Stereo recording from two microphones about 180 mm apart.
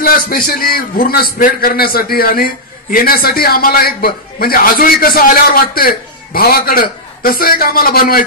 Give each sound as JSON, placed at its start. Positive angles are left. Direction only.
{"t": 0.0, "sound": "a man's voice", "side_deg": 55}